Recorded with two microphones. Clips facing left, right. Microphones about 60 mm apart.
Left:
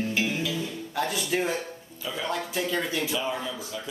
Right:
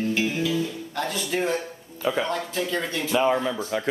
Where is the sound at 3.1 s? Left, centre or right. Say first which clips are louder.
Right 8 dB; right.